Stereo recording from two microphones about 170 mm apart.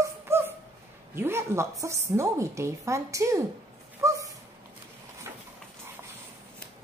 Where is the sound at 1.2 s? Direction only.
15° right (ahead or behind).